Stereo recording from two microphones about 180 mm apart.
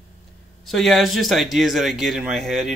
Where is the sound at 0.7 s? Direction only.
Centre (ahead or behind).